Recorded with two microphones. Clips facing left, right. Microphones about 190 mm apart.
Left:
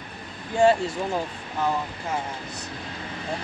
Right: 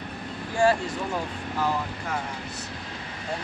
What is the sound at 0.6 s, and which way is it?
Speech, 25° left (ahead or behind).